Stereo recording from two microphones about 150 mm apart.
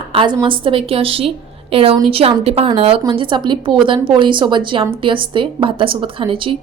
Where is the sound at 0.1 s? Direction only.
35° right (ahead or behind).